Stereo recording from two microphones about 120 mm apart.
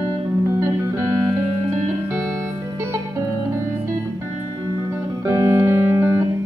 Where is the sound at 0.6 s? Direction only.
25° right (ahead or behind).